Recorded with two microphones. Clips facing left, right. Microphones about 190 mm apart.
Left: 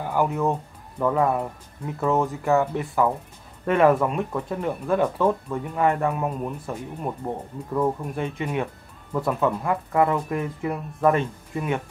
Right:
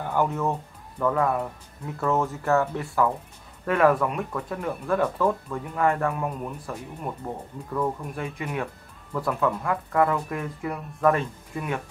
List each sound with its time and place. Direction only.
0.0 s speech: 10° left (ahead or behind)